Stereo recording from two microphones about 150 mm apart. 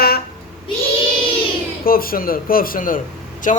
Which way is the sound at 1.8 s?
75° left (ahead or behind).